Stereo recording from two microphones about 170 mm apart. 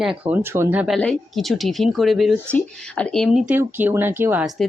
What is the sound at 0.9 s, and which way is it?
Speech, 5° left (ahead or behind).